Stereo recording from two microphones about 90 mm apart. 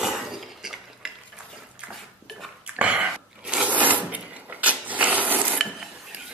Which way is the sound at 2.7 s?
15° right (ahead or behind).